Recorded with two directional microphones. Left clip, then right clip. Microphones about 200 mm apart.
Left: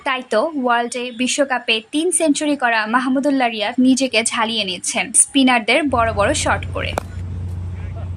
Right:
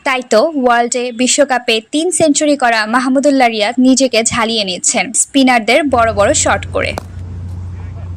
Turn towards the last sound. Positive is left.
turn(degrees=-25)  # may be behind; listen again after turning